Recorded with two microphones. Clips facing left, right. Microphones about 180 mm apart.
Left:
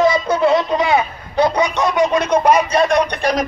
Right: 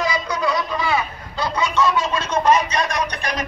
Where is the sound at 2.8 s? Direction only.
60° left (ahead or behind).